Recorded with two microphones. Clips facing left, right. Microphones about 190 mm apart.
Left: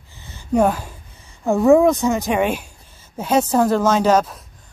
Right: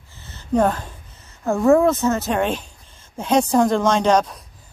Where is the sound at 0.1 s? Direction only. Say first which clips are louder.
Left 1 dB; 15° left (ahead or behind).